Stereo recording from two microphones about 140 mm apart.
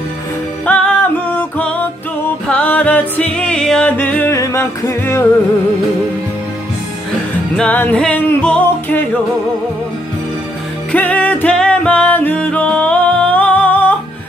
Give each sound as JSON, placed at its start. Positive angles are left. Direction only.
{"t": 0.7, "sound": "music", "side_deg": 10}
{"t": 2.4, "sound": "music", "side_deg": 10}
{"t": 7.5, "sound": "music", "side_deg": 10}
{"t": 10.9, "sound": "music", "side_deg": 10}